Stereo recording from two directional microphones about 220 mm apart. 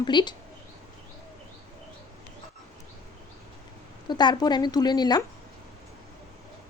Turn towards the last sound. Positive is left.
turn(degrees=20)  # may be behind; listen again after turning